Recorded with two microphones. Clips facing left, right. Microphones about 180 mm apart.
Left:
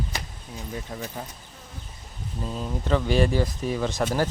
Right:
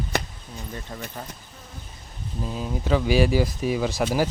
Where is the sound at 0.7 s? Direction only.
5° left (ahead or behind).